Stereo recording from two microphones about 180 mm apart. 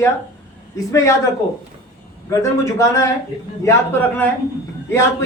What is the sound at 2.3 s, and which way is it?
A man's voice, 15° left (ahead or behind).